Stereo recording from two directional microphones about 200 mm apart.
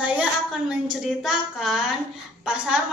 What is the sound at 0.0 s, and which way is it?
A woman's voice, 5° right (ahead or behind).